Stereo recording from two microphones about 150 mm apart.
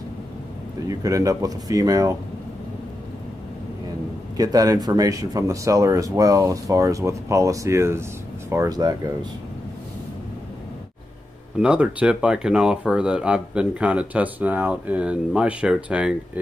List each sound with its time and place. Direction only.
0.8 s speech: 20° right (ahead or behind)
4.4 s speech: 25° right (ahead or behind)
11.6 s speech: 10° right (ahead or behind)